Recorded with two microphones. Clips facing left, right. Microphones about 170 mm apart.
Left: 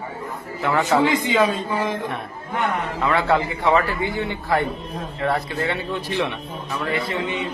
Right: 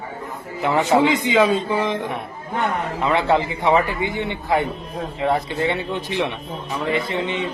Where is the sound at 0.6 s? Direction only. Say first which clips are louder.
Right 2 dB; 20° right (ahead or behind).